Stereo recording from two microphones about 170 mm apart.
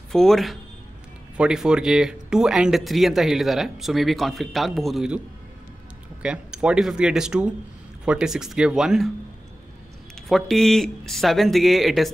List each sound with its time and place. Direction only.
0.1 s speech: centre (ahead or behind)
6.2 s speech: 5° right (ahead or behind)
10.2 s speech: centre (ahead or behind)